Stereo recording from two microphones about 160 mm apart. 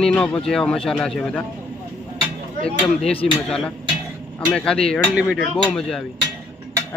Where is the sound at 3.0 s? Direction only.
35° left (ahead or behind).